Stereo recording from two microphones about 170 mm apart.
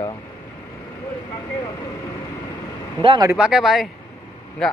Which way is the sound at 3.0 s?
25° right (ahead or behind).